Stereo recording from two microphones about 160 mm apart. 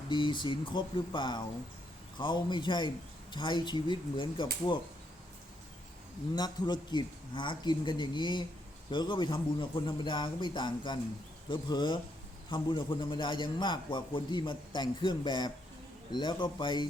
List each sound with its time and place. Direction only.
0.1 s a man's voice: 30° left (ahead or behind)
6.3 s a man's voice: 25° left (ahead or behind)